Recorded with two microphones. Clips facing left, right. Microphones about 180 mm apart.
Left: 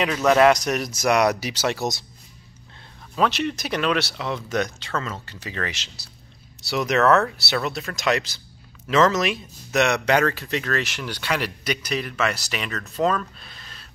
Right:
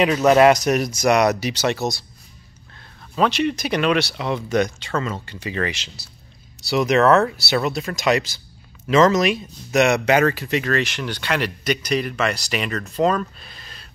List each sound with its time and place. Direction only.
0.1 s speech: 20° right (ahead or behind)
0.4 s speech: 5° right (ahead or behind)
3.2 s speech: centre (ahead or behind)